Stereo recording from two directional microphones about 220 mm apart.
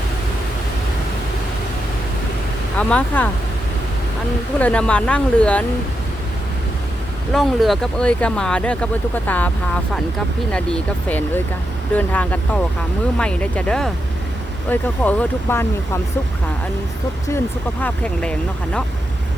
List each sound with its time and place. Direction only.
2.7 s speech: 5° left (ahead or behind)
4.6 s speech: 5° left (ahead or behind)
7.3 s speech: centre (ahead or behind)
10.5 s speech: 5° left (ahead or behind)
17.2 s speech: 10° left (ahead or behind)